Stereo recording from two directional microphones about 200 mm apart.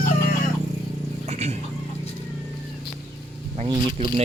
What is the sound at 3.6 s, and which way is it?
Speech, 30° right (ahead or behind).